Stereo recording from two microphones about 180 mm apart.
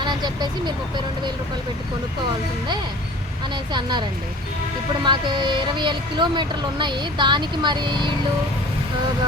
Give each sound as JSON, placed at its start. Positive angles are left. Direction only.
{"t": 0.0, "sound": "speech", "side_deg": -25}
{"t": 3.5, "sound": "a woman's voice", "side_deg": -25}
{"t": 5.0, "sound": "a woman's voice", "side_deg": -25}